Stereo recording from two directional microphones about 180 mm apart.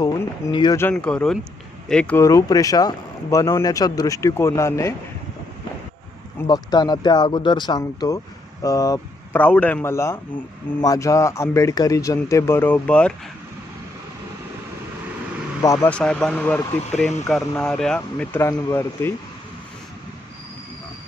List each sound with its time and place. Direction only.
0.0 s speech: 25° left (ahead or behind)
0.7 s speech: 10° left (ahead or behind)
6.4 s speech: 20° left (ahead or behind)
9.4 s speech: 10° left (ahead or behind)
15.6 s speech: 15° left (ahead or behind)
15.9 s speech: 5° left (ahead or behind)